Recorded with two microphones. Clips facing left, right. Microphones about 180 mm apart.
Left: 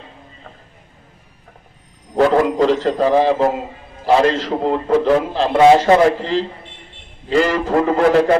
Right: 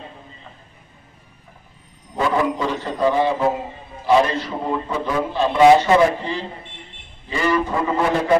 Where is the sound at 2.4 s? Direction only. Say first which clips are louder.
Left 7 dB; 90° left.